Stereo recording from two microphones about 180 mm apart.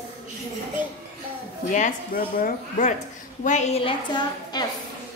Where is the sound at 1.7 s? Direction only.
45° left (ahead or behind); by 4.6 s 25° left (ahead or behind).